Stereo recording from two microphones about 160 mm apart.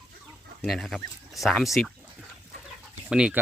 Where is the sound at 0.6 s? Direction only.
Centre (ahead or behind).